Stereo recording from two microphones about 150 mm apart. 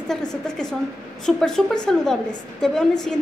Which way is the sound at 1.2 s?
5° left (ahead or behind).